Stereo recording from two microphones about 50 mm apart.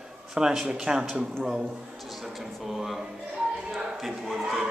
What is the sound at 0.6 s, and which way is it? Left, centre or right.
Speech, centre.